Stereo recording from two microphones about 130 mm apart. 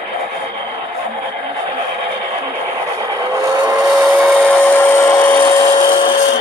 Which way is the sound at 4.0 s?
Centre (ahead or behind).